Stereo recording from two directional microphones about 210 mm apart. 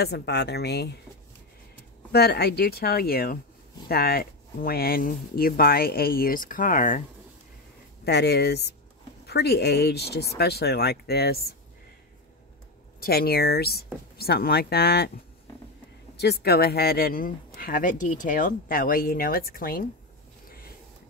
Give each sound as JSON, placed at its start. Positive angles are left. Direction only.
{"t": 0.0, "sound": "speech", "side_deg": 50}
{"t": 2.1, "sound": "speech", "side_deg": 50}
{"t": 8.0, "sound": "speech", "side_deg": 55}
{"t": 13.0, "sound": "speech", "side_deg": 45}
{"t": 16.2, "sound": "speech", "side_deg": 50}
{"t": 20.4, "sound": "a sound", "side_deg": 45}